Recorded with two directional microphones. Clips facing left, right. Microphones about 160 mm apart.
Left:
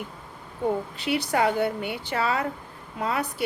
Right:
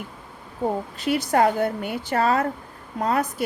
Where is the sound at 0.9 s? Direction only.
45° right (ahead or behind).